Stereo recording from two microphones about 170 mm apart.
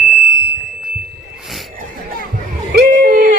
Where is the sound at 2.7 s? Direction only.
55° right (ahead or behind).